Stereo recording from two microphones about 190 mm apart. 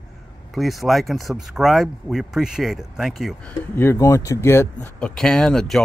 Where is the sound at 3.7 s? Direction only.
15° left (ahead or behind).